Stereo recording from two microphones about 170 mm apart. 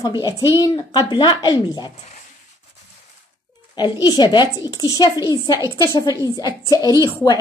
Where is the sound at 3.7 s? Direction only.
25° left (ahead or behind).